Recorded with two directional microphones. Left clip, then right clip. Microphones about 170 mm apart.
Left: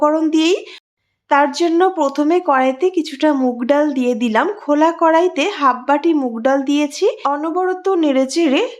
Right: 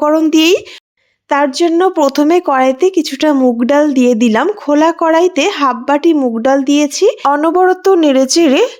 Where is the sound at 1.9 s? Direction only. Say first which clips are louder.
Right 5 dB; 45° right (ahead or behind).